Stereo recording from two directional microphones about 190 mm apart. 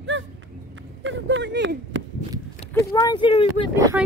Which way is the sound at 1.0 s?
75° right (ahead or behind).